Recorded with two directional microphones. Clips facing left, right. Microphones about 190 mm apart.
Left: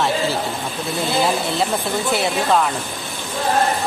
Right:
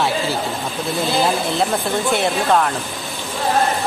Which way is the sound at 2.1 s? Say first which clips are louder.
Right 1 dB; centre (ahead or behind).